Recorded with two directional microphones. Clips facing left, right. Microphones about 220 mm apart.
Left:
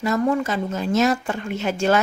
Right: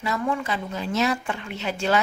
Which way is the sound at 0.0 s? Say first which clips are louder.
Left 6 dB; 45° left (ahead or behind).